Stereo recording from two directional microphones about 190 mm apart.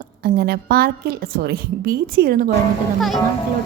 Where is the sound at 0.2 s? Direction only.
50° right (ahead or behind).